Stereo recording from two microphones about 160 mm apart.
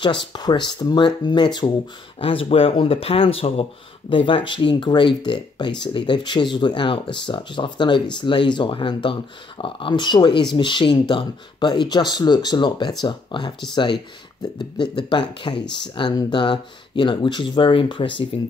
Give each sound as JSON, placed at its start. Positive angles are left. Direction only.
{"t": 0.3, "sound": "speech", "side_deg": 25}